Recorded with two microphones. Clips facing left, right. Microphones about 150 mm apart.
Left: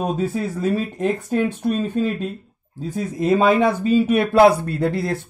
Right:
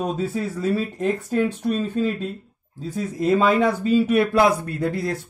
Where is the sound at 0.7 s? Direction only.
20° left (ahead or behind).